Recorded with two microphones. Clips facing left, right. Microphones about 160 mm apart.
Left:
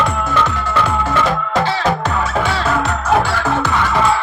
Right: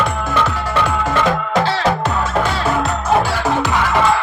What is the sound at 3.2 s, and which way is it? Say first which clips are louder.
Music: even; 20° right (ahead or behind).